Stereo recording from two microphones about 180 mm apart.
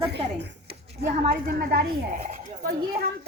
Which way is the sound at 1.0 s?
55° right (ahead or behind).